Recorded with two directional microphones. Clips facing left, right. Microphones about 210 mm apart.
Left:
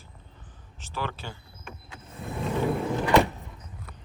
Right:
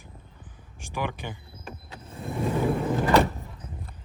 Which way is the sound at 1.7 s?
35° right (ahead or behind).